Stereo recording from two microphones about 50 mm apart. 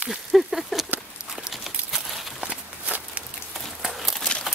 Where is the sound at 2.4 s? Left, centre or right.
Right.